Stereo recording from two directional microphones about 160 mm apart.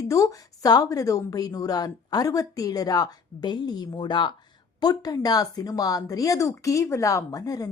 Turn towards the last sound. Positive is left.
turn(degrees=20)  # may be behind; listen again after turning